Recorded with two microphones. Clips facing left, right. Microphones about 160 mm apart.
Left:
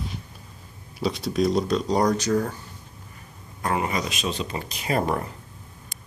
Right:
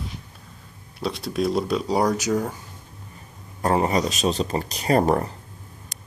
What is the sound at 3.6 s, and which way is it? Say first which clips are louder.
Speech: right 5 dB; 35° right (ahead or behind).